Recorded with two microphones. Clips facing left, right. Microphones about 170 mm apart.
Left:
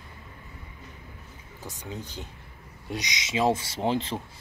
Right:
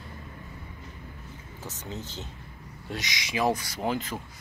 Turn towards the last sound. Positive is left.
turn(degrees=30)  # may be behind; listen again after turning